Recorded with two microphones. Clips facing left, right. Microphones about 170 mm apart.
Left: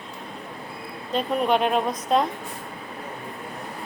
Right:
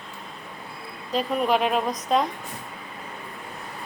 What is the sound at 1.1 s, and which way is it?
A woman's voice, centre (ahead or behind).